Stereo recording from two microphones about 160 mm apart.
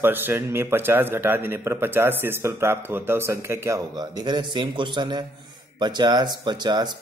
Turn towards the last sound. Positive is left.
turn(degrees=-25)  # may be behind; listen again after turning